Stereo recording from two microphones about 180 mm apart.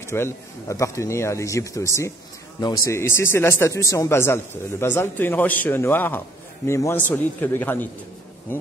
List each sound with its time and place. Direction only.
0.0 s a man's voice: 15° left (ahead or behind)